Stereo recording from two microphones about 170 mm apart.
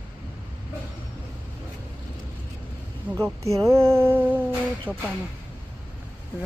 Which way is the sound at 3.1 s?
10° right (ahead or behind).